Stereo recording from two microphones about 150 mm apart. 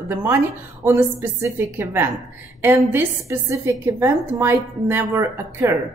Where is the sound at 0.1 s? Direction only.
15° right (ahead or behind).